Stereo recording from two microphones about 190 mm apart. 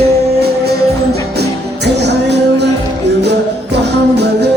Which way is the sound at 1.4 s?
60° right (ahead or behind).